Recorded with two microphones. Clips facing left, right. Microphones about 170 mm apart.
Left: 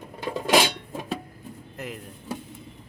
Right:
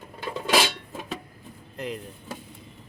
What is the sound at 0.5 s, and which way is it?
Music, 20° left (ahead or behind).